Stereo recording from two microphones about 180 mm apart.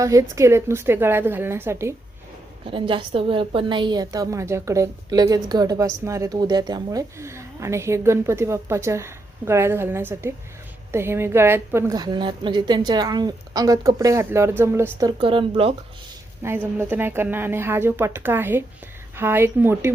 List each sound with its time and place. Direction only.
0.0 s a woman's voice: 15° right (ahead or behind)
2.6 s a woman's voice: 30° right (ahead or behind)
16.4 s a woman's voice: 10° right (ahead or behind)